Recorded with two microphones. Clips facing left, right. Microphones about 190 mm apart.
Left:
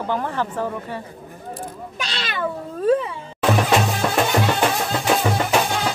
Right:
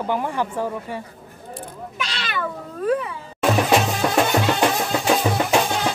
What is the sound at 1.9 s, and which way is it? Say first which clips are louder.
Cat: right 1 dB; 35° left (ahead or behind).